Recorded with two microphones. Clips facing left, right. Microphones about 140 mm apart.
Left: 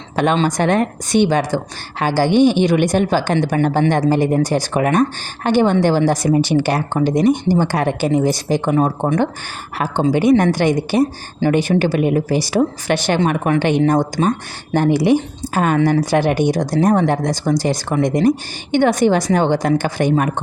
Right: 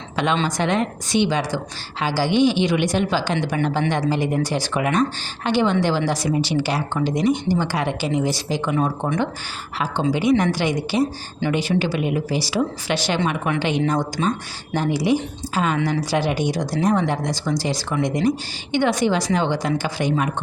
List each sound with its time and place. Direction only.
0.3 s a woman's voice: 45° left (ahead or behind)